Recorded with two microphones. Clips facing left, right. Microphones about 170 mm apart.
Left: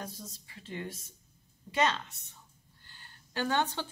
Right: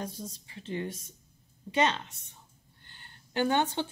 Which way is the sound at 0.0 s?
25° right (ahead or behind).